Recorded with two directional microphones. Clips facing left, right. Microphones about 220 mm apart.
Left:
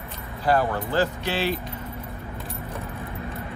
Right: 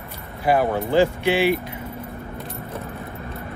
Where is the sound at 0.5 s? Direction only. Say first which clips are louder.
Right 3 dB; 15° right (ahead or behind).